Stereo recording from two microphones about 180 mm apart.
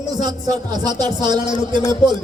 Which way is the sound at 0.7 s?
25° right (ahead or behind).